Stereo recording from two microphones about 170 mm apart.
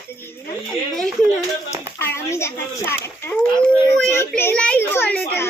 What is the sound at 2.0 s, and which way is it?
A child's voice, 15° left (ahead or behind).